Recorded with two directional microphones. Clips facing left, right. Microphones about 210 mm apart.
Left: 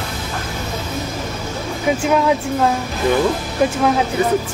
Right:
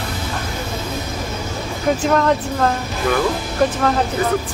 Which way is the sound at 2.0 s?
5° left (ahead or behind).